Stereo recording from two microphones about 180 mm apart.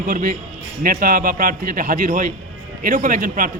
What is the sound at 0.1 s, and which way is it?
A man's voice, 50° right (ahead or behind).